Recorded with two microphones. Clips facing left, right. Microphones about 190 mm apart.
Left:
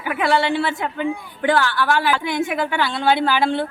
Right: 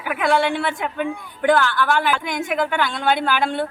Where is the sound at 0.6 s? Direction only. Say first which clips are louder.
Left 1 dB; 5° left (ahead or behind).